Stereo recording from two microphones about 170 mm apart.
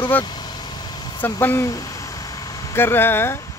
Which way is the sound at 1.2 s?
10° left (ahead or behind).